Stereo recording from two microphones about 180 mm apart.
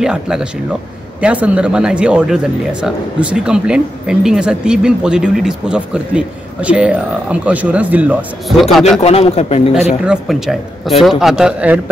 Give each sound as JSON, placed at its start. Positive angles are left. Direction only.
{"t": 0.0, "sound": "speech", "side_deg": -5}
{"t": 9.0, "sound": "a man's voice", "side_deg": 35}
{"t": 10.0, "sound": "speech", "side_deg": 0}